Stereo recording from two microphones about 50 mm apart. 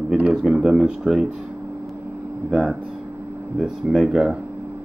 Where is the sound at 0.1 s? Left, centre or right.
Right.